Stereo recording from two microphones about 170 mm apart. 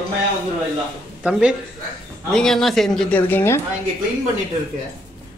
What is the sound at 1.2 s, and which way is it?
A man's voice, 5° right (ahead or behind).